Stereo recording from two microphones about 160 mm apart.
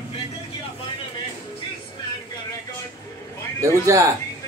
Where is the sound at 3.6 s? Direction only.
20° right (ahead or behind).